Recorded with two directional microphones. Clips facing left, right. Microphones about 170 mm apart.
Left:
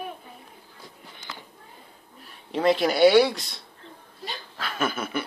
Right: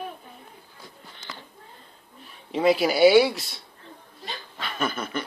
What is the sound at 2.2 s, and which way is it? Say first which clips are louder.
Speech: right 1 dB; 5° right (ahead or behind).